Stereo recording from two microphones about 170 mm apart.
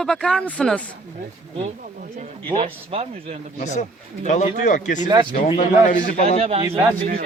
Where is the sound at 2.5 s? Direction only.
35° right (ahead or behind).